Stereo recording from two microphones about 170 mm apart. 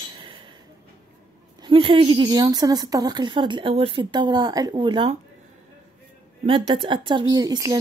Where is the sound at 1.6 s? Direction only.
30° right (ahead or behind).